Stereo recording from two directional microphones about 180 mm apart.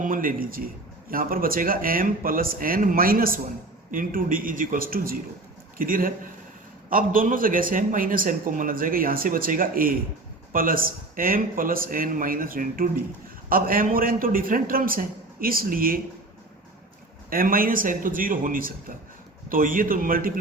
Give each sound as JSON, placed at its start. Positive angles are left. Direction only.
{"t": 0.0, "sound": "speech", "side_deg": -50}
{"t": 17.2, "sound": "speech", "side_deg": -55}